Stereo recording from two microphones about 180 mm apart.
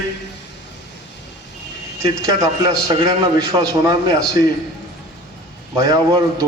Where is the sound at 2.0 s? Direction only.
20° right (ahead or behind).